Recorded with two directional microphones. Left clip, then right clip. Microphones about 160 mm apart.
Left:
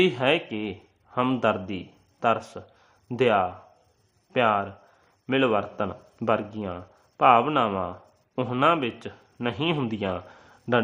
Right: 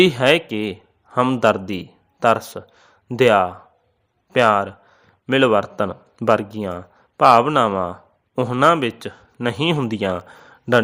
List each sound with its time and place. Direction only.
0.0 s a man's voice: 30° right (ahead or behind)